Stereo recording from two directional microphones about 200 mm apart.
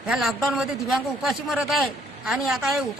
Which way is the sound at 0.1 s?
Centre (ahead or behind).